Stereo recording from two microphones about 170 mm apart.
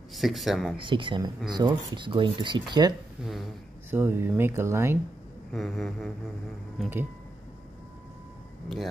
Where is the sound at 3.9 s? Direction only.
10° right (ahead or behind).